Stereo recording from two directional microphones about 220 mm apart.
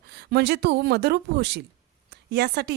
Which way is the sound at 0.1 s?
50° right (ahead or behind).